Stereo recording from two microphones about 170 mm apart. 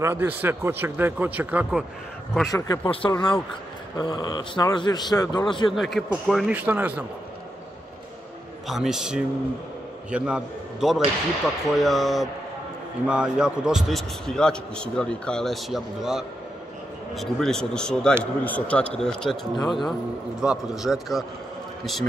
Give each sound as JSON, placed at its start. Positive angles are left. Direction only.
{"t": 0.0, "sound": "speech", "side_deg": -15}
{"t": 2.5, "sound": "a man's voice", "side_deg": 25}
{"t": 5.7, "sound": "a man's voice", "side_deg": 0}
{"t": 8.6, "sound": "a man's voice", "side_deg": 0}